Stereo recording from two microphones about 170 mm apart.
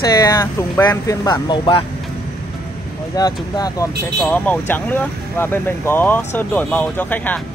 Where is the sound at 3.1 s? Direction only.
20° left (ahead or behind).